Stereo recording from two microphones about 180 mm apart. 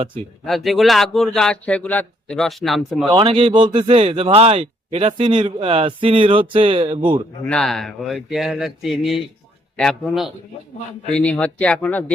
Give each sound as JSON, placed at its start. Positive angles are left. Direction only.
{"t": 0.4, "sound": "speech", "side_deg": 0}
{"t": 3.1, "sound": "speech", "side_deg": -30}
{"t": 7.4, "sound": "speech", "side_deg": 5}